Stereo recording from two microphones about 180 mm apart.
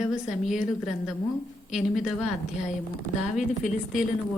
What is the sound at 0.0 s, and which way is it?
A woman's voice, centre (ahead or behind).